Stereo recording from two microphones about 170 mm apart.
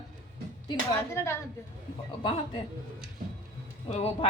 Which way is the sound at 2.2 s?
30° left (ahead or behind).